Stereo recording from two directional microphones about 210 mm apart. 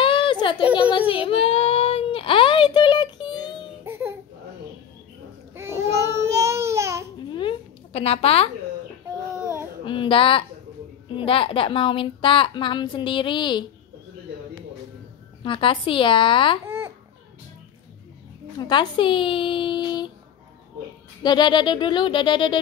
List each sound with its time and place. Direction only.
0.0 s a sound: 25° left (ahead or behind)
0.7 s baby cry: 25° left (ahead or behind)
3.8 s baby cry: 10° right (ahead or behind)
5.5 s babbling: 10° right (ahead or behind)
7.3 s a sound: 25° left (ahead or behind)
9.8 s a sound: 25° left (ahead or behind)
11.1 s a woman's voice: 25° left (ahead or behind)
15.4 s a woman's voice: 25° left (ahead or behind)
16.6 s babbling: 10° right (ahead or behind)
18.6 s a woman's voice: 20° left (ahead or behind)
21.2 s a woman's voice: 20° left (ahead or behind)